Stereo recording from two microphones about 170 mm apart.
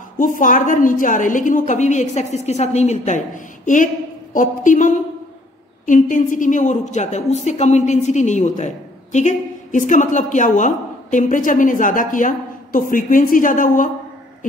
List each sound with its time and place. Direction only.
0.4 s a woman's voice: 50° left (ahead or behind)